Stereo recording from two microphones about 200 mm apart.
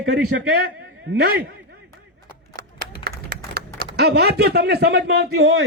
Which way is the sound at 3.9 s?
55° right (ahead or behind).